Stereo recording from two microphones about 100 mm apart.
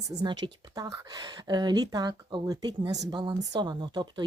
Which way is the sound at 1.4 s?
45° right (ahead or behind).